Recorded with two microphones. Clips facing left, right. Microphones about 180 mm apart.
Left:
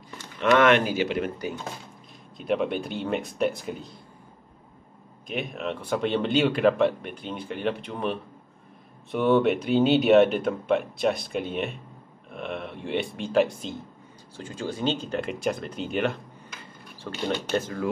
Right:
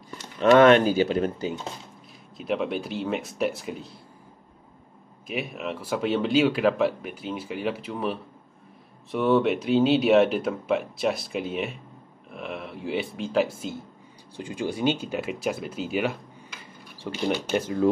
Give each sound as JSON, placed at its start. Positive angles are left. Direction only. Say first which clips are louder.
{"t": 0.4, "sound": "speech", "louder": "right 4 dB", "side_deg": -35}
{"t": 2.3, "sound": "speech", "louder": "left 1 dB", "side_deg": 0}
{"t": 5.2, "sound": "speech", "louder": "even", "side_deg": -5}